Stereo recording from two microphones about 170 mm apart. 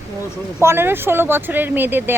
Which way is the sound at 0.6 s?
15° right (ahead or behind).